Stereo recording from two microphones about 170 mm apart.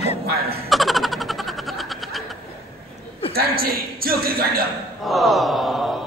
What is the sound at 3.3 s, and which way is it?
A man's voice, 60° right (ahead or behind).